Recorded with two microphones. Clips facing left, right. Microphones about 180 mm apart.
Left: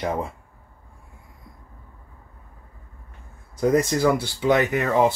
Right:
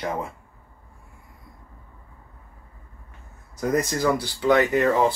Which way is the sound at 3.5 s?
25° left (ahead or behind).